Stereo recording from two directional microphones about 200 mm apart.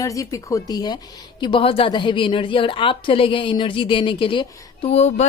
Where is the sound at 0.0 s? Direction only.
15° left (ahead or behind).